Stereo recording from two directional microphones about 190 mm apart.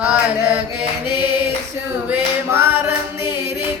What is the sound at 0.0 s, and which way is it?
Chant, 10° right (ahead or behind).